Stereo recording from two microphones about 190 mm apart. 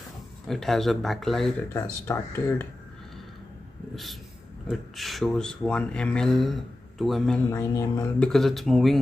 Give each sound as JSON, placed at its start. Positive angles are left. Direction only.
{"t": 0.5, "sound": "speech", "side_deg": 0}
{"t": 1.7, "sound": "speech", "side_deg": 10}
{"t": 3.9, "sound": "a sound", "side_deg": 0}
{"t": 4.6, "sound": "speech", "side_deg": 0}
{"t": 7.4, "sound": "speech", "side_deg": 15}
{"t": 8.2, "sound": "speech", "side_deg": 0}